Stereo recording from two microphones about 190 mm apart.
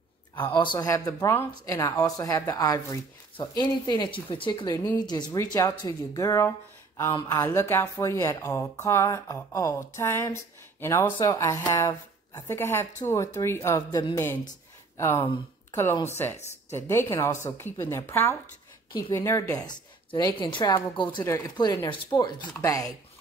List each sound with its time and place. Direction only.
0.4 s speech: 25° left (ahead or behind)
15.1 s speech: 25° left (ahead or behind)
15.7 s speech: 15° left (ahead or behind)